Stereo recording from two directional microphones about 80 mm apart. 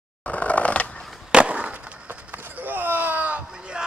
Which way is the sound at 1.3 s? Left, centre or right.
Centre.